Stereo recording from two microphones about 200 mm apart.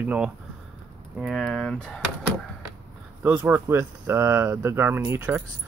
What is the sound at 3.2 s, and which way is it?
Speech, 10° right (ahead or behind).